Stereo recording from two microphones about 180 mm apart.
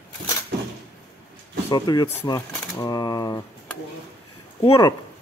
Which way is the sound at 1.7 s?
20° left (ahead or behind).